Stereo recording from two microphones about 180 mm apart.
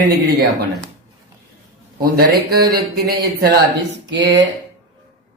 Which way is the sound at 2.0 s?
60° right (ahead or behind).